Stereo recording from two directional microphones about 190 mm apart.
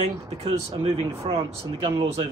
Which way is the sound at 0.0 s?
30° right (ahead or behind).